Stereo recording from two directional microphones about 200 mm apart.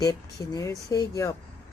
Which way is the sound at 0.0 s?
20° left (ahead or behind).